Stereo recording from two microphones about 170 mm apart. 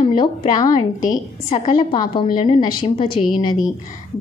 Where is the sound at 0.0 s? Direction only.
25° left (ahead or behind).